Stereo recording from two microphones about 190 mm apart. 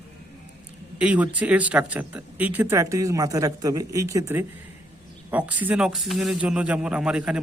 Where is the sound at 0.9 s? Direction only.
5° right (ahead or behind).